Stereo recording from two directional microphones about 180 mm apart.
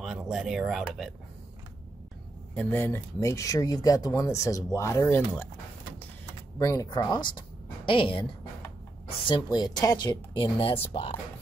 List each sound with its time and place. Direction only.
0.0 s speech: centre (ahead or behind)
2.5 s speech: 10° left (ahead or behind)
6.6 s a woman's voice: 20° left (ahead or behind)